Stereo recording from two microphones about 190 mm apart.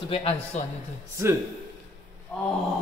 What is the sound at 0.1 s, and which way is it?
Speech, 30° left (ahead or behind).